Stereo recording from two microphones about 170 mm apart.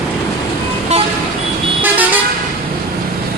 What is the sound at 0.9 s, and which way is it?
Vehicle, 40° right (ahead or behind).